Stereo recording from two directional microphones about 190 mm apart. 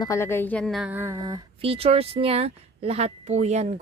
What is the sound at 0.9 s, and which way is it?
Female singing, 10° right (ahead or behind).